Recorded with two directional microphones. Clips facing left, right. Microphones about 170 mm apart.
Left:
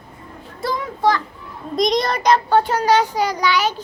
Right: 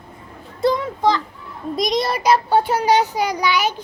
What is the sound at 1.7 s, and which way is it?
A child's voice, centre (ahead or behind).